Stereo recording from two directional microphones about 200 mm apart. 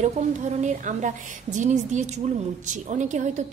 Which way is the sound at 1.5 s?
35° right (ahead or behind).